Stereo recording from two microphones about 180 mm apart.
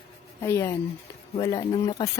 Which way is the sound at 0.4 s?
15° left (ahead or behind).